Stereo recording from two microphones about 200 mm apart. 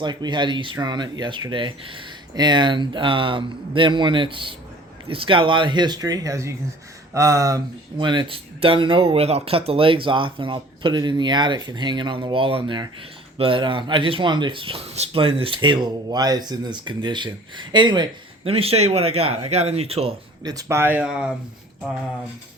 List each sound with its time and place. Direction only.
0.0 s speech: 20° right (ahead or behind)
20.4 s speech: 20° right (ahead or behind)